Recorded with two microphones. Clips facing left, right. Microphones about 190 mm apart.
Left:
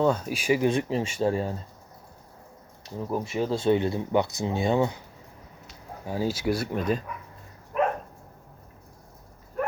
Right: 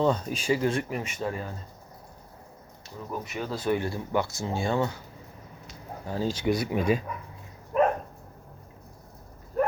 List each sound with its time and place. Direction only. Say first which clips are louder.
0.0 s speech: left 1 dB; 5° left (ahead or behind); by 1.5 s 30° left (ahead or behind)
3.1 s speech: left 6 dB; 30° left (ahead or behind)
6.1 s speech: even; 10° left (ahead or behind)
6.7 s speech: right 2 dB; 10° right (ahead or behind)
7.7 s dog: right 2 dB; 35° right (ahead or behind)